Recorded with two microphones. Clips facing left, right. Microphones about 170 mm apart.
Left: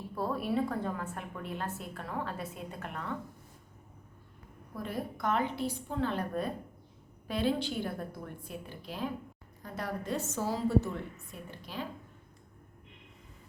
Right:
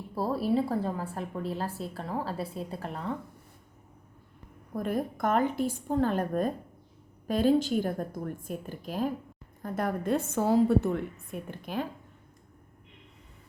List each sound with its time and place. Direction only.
0.1 s a woman's voice: 30° right (ahead or behind)
4.7 s a woman's voice: 50° right (ahead or behind)